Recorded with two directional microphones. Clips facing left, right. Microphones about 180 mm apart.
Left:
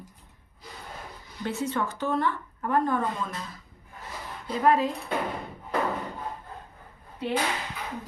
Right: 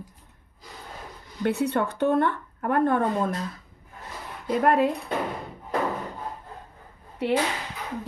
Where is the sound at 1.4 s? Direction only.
60° right (ahead or behind).